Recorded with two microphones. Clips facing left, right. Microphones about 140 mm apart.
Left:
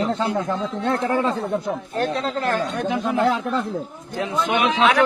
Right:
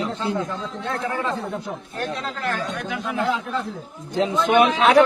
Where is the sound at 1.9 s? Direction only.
35° left (ahead or behind).